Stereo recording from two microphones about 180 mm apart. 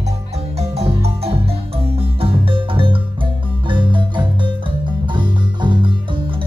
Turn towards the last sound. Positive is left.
turn(degrees=-25)  # may be behind; listen again after turning